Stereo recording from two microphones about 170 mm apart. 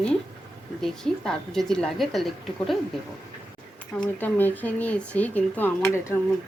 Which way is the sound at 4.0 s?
10° left (ahead or behind).